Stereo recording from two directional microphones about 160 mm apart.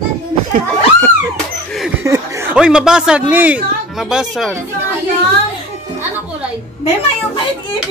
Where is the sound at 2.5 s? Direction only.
5° right (ahead or behind).